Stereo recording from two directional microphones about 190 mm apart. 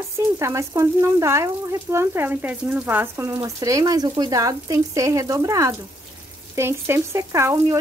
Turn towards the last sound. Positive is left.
turn(degrees=-15)  # may be behind; listen again after turning